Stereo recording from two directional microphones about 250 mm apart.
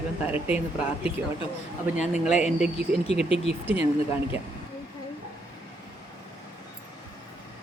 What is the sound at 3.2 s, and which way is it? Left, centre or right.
Speech, left.